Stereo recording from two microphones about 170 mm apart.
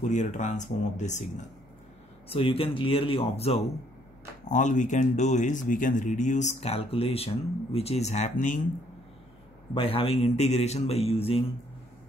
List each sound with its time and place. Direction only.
0.1 s speech: 45° left (ahead or behind)
2.2 s a man's voice: 35° left (ahead or behind)
4.5 s speech: 45° left (ahead or behind)
9.8 s a man's voice: 35° left (ahead or behind)